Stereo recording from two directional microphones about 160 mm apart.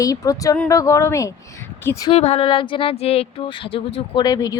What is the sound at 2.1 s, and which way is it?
Speech, 40° left (ahead or behind).